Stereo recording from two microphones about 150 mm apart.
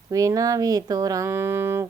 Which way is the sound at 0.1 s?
25° right (ahead or behind).